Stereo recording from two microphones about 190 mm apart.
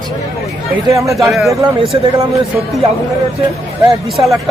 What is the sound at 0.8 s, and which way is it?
Speech, 15° right (ahead or behind).